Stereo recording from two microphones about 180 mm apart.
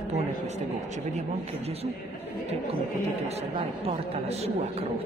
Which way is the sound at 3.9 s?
35° right (ahead or behind).